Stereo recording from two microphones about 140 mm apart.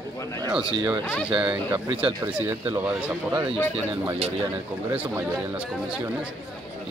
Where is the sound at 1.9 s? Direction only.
40° right (ahead or behind).